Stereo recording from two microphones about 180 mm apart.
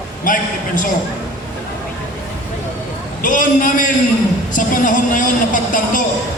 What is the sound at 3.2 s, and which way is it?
A man's voice, 45° left (ahead or behind).